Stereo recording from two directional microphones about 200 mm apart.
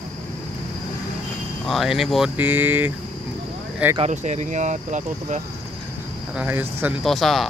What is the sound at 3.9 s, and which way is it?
Speech, 35° right (ahead or behind).